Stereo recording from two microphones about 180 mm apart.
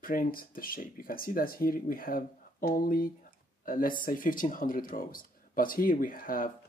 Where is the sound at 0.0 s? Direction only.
50° left (ahead or behind).